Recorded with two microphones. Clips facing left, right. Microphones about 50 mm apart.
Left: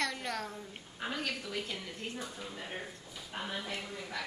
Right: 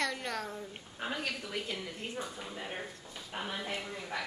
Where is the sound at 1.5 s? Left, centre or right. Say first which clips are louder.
Right 1 dB; right.